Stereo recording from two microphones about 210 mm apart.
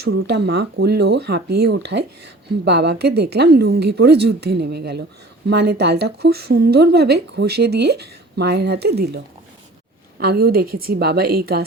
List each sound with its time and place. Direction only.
0.0 s speech: 50° right (ahead or behind)